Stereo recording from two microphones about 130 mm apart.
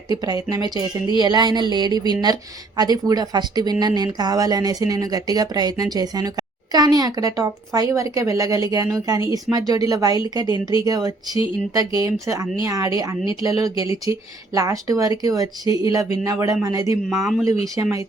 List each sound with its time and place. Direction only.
0.1 s speech: 30° right (ahead or behind)
17.2 s speech: centre (ahead or behind)
17.8 s speech: 20° right (ahead or behind)